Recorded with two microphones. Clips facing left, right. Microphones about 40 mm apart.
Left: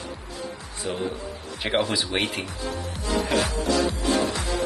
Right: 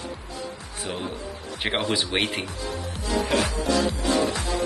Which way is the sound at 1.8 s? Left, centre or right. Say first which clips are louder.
Right 1 dB; right.